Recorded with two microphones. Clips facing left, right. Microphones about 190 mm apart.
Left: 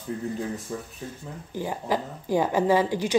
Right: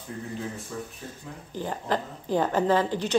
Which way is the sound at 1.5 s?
10° left (ahead or behind).